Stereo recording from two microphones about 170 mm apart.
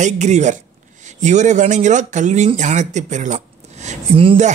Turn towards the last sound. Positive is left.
turn(degrees=-35)  # may be behind; listen again after turning